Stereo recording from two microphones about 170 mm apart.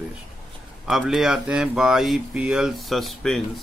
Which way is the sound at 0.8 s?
Centre (ahead or behind).